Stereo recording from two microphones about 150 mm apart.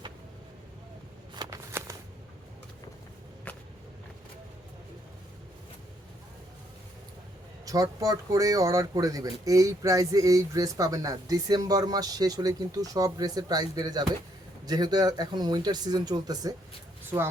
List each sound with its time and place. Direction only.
1.4 s shuffling cards: 20° right (ahead or behind)
3.5 s walk: 10° left (ahead or behind)
7.6 s speech: 25° right (ahead or behind)